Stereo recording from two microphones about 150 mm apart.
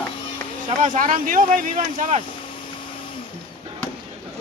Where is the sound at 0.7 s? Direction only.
60° right (ahead or behind).